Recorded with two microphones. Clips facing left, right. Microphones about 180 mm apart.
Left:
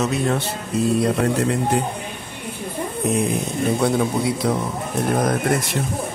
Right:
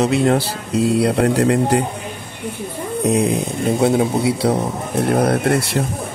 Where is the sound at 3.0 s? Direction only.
35° right (ahead or behind).